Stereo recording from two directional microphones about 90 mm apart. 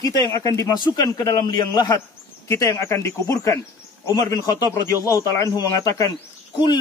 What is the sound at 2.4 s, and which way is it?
Speech, 35° left (ahead or behind).